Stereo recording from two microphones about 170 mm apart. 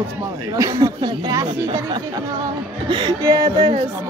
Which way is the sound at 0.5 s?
20° right (ahead or behind).